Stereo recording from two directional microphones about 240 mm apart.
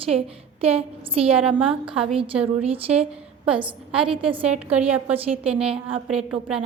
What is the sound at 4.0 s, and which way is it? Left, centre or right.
Speech, right.